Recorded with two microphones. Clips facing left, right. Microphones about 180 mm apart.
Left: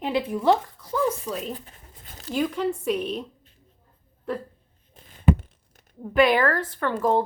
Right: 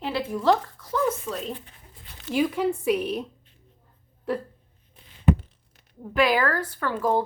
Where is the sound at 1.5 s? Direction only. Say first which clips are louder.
Left 1 dB; 40° left (ahead or behind).